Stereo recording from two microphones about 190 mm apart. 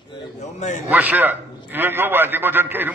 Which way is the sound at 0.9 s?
10° right (ahead or behind).